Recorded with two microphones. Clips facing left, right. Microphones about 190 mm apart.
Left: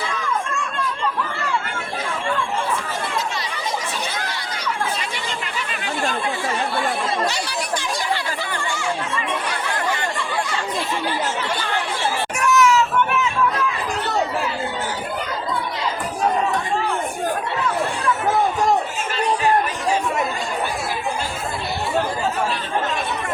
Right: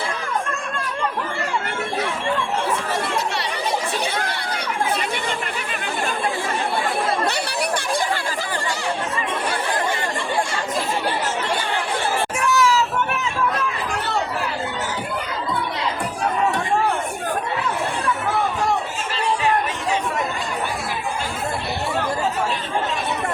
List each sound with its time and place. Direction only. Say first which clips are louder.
12.4 s vehicle: left 3 dB; 30° right (ahead or behind)